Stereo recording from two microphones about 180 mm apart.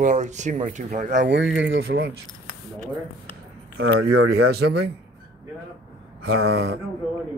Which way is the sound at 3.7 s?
60° right (ahead or behind).